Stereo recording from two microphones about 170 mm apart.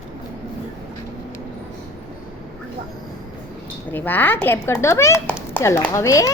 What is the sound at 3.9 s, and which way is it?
A woman's voice, 10° left (ahead or behind).